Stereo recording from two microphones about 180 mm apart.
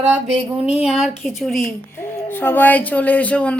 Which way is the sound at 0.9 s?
Centre (ahead or behind).